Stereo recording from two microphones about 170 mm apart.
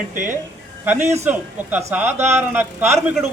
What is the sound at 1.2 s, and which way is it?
A man's voice, 10° right (ahead or behind).